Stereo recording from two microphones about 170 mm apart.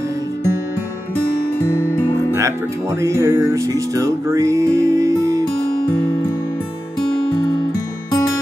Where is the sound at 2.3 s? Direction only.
15° right (ahead or behind).